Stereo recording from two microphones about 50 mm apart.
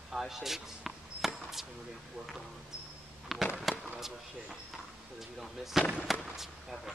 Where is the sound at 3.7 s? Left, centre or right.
Centre.